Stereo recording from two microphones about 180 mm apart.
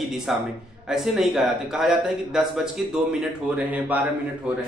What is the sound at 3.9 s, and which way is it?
Speech, 10° right (ahead or behind).